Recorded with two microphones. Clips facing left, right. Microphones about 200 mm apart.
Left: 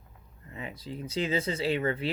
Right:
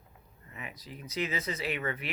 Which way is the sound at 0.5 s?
30° left (ahead or behind).